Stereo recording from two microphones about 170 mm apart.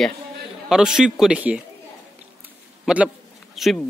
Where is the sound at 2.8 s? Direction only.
5° right (ahead or behind).